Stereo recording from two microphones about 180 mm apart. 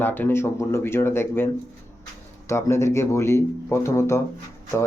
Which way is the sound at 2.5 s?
15° left (ahead or behind).